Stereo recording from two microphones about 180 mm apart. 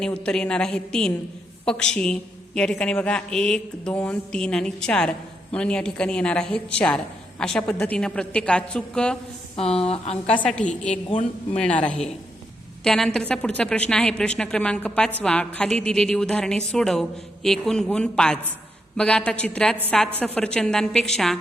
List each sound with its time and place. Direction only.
0.0 s a woman's voice: 5° left (ahead or behind)
10.9 s a man's voice: 40° left (ahead or behind)
11.5 s speech: 5° left (ahead or behind)
12.8 s speech: 5° left (ahead or behind)